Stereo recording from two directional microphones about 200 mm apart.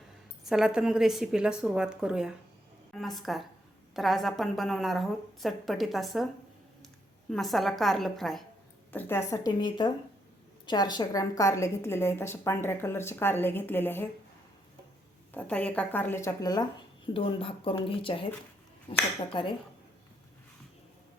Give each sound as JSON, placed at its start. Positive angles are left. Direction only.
{"t": 0.4, "sound": "a woman's voice", "side_deg": -5}
{"t": 15.3, "sound": "a woman's voice", "side_deg": 5}